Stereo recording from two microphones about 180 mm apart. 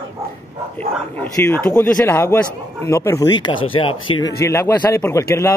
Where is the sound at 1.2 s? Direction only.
10° left (ahead or behind); by 4.3 s 30° left (ahead or behind).